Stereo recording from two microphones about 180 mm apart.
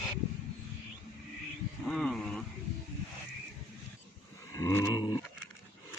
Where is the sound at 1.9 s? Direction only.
5° left (ahead or behind).